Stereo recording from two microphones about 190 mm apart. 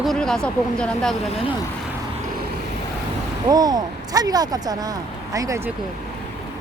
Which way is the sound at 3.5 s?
20° right (ahead or behind).